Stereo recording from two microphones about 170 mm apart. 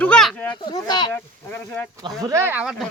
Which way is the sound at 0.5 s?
25° left (ahead or behind).